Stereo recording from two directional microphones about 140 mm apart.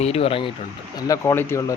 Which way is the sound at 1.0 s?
25° left (ahead or behind).